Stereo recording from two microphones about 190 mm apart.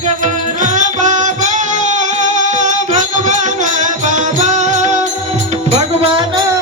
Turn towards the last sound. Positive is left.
turn(degrees=-30)  # may be behind; listen again after turning